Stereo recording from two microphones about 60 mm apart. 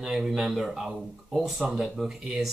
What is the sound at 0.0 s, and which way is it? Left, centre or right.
Speech, centre.